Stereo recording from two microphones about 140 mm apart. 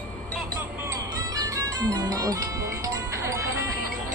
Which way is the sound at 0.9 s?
25° right (ahead or behind).